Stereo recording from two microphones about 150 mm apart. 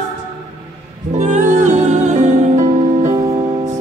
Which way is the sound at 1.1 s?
55° right (ahead or behind).